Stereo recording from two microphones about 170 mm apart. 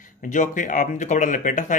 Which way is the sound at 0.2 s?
50° left (ahead or behind).